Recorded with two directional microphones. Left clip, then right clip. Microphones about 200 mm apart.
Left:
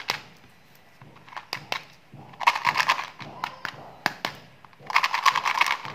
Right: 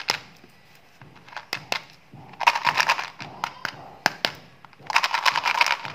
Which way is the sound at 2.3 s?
15° right (ahead or behind).